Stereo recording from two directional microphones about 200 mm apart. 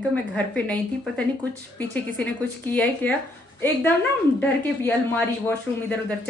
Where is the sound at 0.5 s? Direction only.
5° left (ahead or behind).